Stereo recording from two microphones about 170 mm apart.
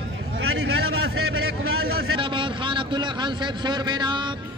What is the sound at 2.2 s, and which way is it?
A man's voice, 30° right (ahead or behind).